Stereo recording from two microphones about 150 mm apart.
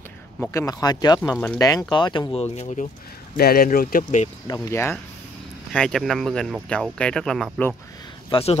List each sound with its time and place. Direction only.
0.5 s speech: 25° left (ahead or behind)
1.3 s speech: 10° left (ahead or behind)
1.6 s speech: 25° left (ahead or behind)
2.5 s speech: 50° left (ahead or behind)
3.3 s speech: 85° left
4.6 s speech: 15° left (ahead or behind)
5.7 s speech: 5° left (ahead or behind)
8.3 s speech: 40° left (ahead or behind)